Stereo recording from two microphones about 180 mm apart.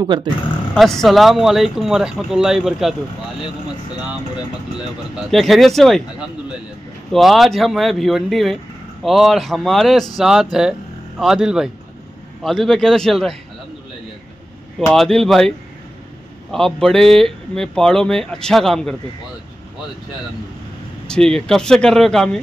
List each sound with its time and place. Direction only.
0.0 s speech: 25° right (ahead or behind)
0.7 s speech: centre (ahead or behind)
5.1 s speech: centre (ahead or behind)
7.1 s speech: centre (ahead or behind)
14.9 s speech: centre (ahead or behind)
16.5 s speech: centre (ahead or behind)
21.1 s speech: 5° left (ahead or behind)